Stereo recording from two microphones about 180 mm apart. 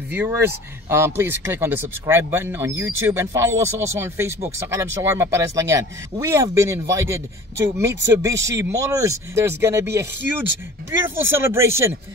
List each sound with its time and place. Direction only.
0.1 s speech: 15° right (ahead or behind)
10.9 s speech: 15° right (ahead or behind)